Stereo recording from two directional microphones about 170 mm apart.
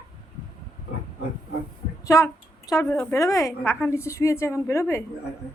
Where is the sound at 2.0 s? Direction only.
20° left (ahead or behind).